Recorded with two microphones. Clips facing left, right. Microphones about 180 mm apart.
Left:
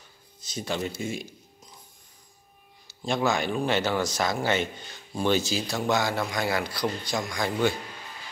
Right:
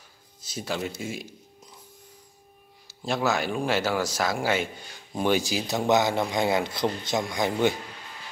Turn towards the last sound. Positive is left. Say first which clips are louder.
# right 2 dB
turn(degrees=-20)  # may be behind; listen again after turning